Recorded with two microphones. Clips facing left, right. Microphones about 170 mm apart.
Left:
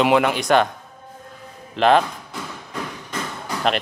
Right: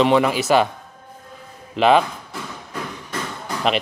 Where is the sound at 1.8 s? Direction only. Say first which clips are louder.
Right 1 dB; centre (ahead or behind).